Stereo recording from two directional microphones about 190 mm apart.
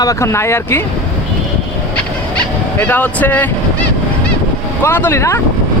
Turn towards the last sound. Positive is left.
turn(degrees=15)  # may be behind; listen again after turning